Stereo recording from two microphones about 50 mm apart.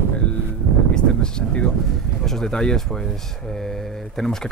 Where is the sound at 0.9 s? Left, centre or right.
Centre.